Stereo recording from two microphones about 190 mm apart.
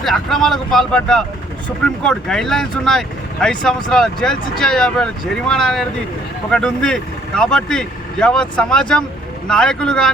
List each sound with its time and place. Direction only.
0.0 s speech: centre (ahead or behind)